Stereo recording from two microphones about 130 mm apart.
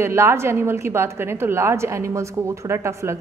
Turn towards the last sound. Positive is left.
turn(degrees=-20)  # may be behind; listen again after turning